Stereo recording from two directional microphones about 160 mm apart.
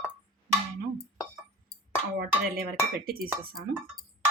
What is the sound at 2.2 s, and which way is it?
Dishes, 70° right (ahead or behind).